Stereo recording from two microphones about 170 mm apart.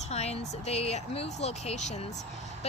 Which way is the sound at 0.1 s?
40° left (ahead or behind).